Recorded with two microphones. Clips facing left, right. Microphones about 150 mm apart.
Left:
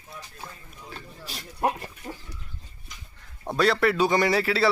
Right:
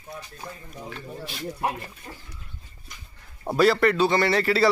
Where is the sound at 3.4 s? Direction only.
5° right (ahead or behind).